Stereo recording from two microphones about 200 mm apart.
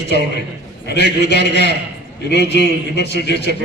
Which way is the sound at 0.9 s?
55° left (ahead or behind).